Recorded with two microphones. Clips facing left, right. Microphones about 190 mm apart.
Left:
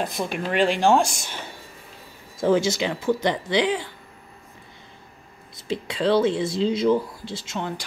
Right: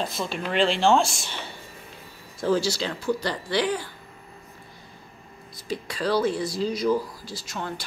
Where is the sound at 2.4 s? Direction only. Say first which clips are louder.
Left 3 dB; 20° left (ahead or behind).